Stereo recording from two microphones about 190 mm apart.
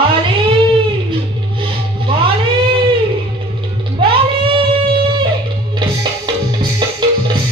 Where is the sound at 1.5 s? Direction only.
25° right (ahead or behind).